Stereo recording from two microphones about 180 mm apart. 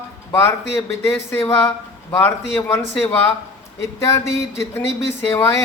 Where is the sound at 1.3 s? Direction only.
15° left (ahead or behind).